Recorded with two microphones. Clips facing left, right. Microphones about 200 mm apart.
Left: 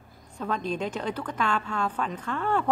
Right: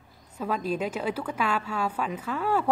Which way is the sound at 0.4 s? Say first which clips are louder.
Right 1 dB; 5° right (ahead or behind).